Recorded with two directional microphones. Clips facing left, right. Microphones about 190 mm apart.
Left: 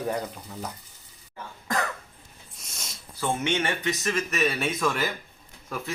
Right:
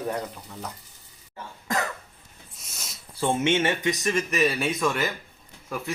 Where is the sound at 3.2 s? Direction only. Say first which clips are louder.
Right 4 dB; 25° right (ahead or behind).